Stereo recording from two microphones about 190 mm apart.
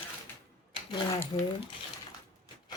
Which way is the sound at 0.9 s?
20° left (ahead or behind).